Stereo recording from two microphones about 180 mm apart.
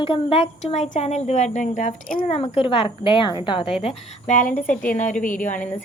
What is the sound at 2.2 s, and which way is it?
A woman's voice, 35° left (ahead or behind).